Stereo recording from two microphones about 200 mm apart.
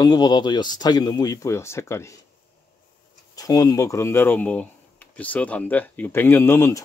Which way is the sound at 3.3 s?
20° left (ahead or behind).